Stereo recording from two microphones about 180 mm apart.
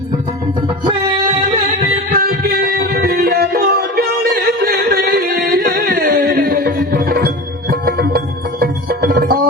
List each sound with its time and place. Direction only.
0.9 s music: 25° right (ahead or behind)
2.0 s music: 55° right (ahead or behind)